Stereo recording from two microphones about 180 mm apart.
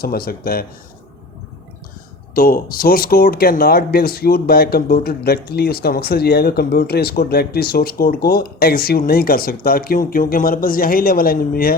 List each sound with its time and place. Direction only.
0.0 s speech: 60° left (ahead or behind)
2.3 s speech: 55° left (ahead or behind)